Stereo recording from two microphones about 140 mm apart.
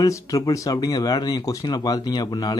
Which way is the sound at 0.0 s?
25° left (ahead or behind).